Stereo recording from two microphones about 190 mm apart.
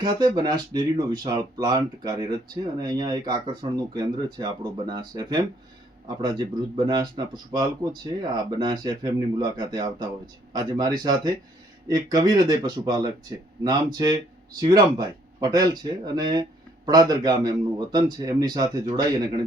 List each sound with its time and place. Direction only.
0.0 s speech: 20° right (ahead or behind)